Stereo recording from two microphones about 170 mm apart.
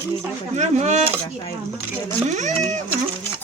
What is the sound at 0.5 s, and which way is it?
Speech, 40° right (ahead or behind).